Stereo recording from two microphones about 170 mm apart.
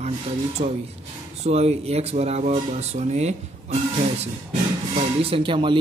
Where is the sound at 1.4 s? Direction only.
40° right (ahead or behind).